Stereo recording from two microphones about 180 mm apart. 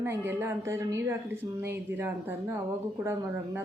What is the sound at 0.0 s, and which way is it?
Speech, 15° right (ahead or behind).